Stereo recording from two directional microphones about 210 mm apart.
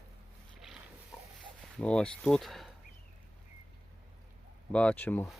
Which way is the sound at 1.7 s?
5° left (ahead or behind).